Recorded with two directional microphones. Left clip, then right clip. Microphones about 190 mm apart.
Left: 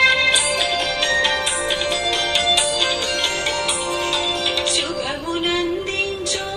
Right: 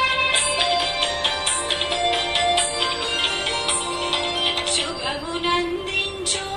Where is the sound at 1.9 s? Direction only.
30° left (ahead or behind).